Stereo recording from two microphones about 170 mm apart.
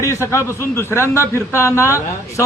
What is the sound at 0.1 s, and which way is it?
A man's voice, 15° left (ahead or behind).